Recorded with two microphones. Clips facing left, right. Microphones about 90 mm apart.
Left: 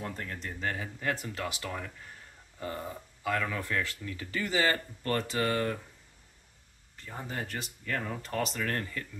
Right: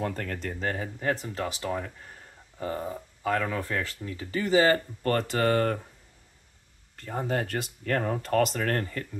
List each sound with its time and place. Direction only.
0.0 s speech: 70° right (ahead or behind)
0.5 s speech: 40° right (ahead or behind)
5.0 s speech: 45° right (ahead or behind)
7.0 s speech: 50° right (ahead or behind)